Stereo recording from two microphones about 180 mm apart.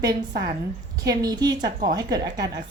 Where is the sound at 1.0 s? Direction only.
20° right (ahead or behind).